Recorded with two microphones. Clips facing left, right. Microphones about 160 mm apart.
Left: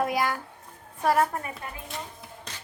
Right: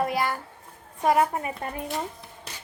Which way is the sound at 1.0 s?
15° right (ahead or behind).